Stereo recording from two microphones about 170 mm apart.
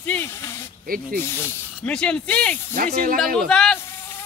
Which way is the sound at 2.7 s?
55° right (ahead or behind).